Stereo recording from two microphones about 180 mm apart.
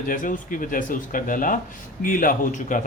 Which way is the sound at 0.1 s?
50° left (ahead or behind).